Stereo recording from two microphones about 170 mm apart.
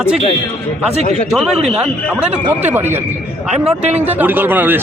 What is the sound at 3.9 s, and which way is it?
Speech, 10° right (ahead or behind).